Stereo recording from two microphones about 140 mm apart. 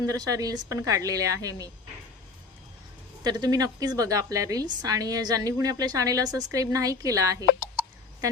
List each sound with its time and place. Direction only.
0.0 s a woman's voice: 25° right (ahead or behind)
3.2 s a woman's voice: 30° right (ahead or behind)